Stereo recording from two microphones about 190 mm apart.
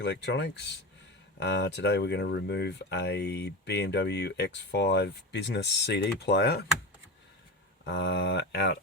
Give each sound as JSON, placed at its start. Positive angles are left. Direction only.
{"t": 0.0, "sound": "speech", "side_deg": 65}
{"t": 7.9, "sound": "speech", "side_deg": 65}